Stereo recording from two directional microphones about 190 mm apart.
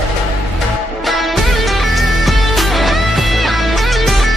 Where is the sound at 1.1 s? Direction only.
Centre (ahead or behind).